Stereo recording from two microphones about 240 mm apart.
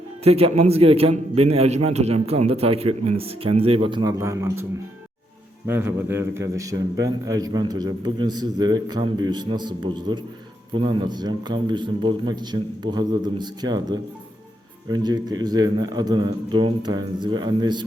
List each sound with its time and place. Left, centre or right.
0.3 s a man's voice: right
5.6 s a man's voice: centre